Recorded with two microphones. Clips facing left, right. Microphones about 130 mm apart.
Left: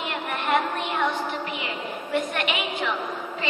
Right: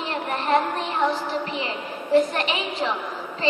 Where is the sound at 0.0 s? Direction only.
35° right (ahead or behind).